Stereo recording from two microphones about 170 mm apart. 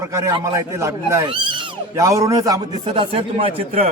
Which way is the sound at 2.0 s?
20° right (ahead or behind).